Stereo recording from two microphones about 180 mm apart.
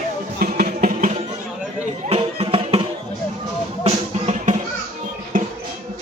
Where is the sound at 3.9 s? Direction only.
40° right (ahead or behind).